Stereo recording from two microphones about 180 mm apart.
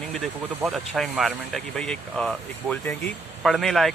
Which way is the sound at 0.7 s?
Centre (ahead or behind).